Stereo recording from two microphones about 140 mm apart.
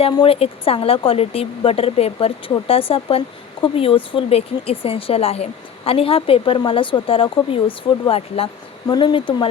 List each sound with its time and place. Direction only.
0.0 s speech: 45° left (ahead or behind)
8.9 s speech: 30° left (ahead or behind)